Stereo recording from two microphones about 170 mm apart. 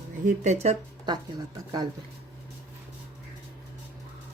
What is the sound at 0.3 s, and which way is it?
Speech, 40° right (ahead or behind).